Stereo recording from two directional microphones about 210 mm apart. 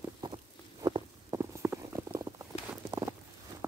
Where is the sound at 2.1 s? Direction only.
20° right (ahead or behind).